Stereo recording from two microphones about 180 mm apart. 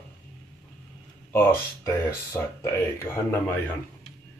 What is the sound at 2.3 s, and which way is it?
Speech, 15° left (ahead or behind).